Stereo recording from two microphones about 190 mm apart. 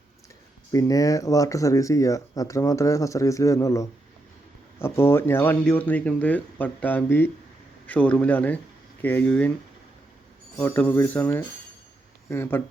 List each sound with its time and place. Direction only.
0.7 s speech: 20° left (ahead or behind)
10.6 s speech: 10° left (ahead or behind)